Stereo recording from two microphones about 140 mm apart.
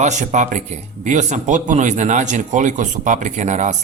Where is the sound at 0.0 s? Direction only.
60° right (ahead or behind).